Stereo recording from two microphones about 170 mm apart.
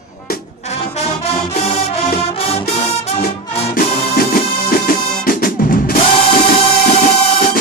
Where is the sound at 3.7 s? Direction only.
60° left (ahead or behind).